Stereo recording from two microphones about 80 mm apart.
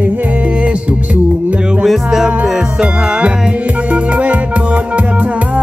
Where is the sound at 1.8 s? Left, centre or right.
Centre.